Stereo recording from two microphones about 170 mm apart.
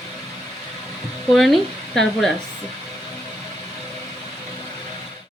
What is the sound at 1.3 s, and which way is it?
Speech, centre (ahead or behind).